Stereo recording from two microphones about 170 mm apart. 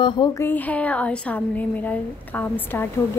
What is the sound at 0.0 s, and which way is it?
A woman's voice, 25° left (ahead or behind).